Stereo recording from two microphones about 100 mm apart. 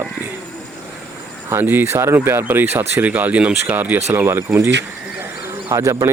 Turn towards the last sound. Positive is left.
turn(degrees=-35)  # may be behind; listen again after turning